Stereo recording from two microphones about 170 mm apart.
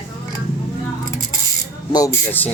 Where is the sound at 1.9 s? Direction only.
20° left (ahead or behind).